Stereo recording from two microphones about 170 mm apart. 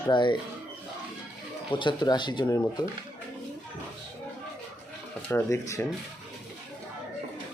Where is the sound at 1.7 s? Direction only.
30° left (ahead or behind).